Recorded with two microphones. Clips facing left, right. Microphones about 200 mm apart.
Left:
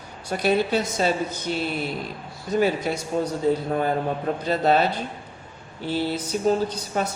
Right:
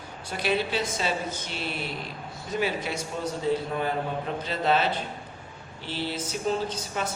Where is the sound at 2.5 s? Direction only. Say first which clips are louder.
Left 7 dB; 40° left (ahead or behind).